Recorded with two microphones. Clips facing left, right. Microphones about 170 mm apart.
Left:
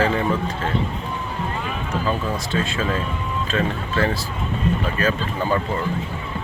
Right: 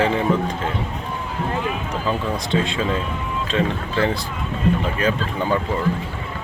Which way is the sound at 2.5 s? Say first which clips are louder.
Right 4 dB; 20° right (ahead or behind).